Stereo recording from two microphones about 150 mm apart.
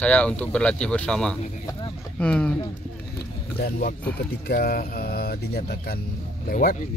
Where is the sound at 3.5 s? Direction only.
85° left.